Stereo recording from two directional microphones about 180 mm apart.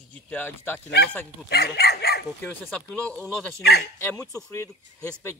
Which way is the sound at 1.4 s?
65° left (ahead or behind).